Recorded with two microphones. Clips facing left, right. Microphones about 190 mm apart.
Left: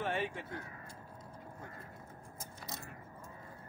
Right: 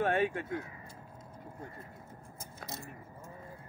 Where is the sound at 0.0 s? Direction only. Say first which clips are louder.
Right 7 dB; 55° right (ahead or behind).